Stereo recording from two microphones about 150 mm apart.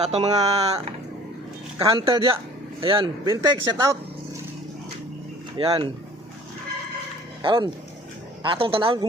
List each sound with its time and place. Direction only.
0.0 s speech: 45° right (ahead or behind)
1.9 s a woman's voice: 30° right (ahead or behind)
3.2 s a man's voice: 20° right (ahead or behind)
5.6 s a woman's voice: 35° right (ahead or behind)
7.4 s a woman's voice: 30° right (ahead or behind)